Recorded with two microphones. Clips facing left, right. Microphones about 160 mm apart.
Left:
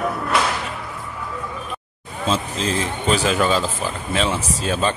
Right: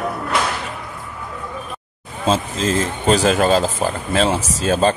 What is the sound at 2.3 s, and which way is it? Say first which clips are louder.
A man's voice: right 4 dB; 40° right (ahead or behind).